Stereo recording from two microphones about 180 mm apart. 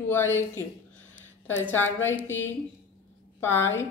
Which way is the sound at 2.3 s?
90° left.